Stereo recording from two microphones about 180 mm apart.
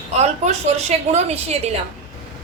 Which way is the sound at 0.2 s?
40° right (ahead or behind).